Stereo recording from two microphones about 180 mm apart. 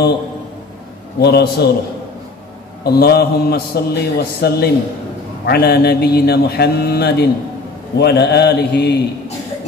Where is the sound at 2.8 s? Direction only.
60° left (ahead or behind).